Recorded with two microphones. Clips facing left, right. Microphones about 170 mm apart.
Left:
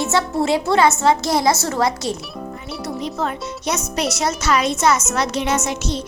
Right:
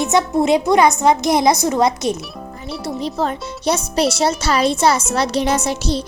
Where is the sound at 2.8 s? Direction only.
30° right (ahead or behind).